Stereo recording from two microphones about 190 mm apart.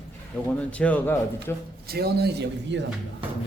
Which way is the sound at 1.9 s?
55° right (ahead or behind).